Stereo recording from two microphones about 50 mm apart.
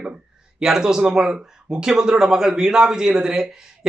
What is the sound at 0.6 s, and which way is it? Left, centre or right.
Speech, centre.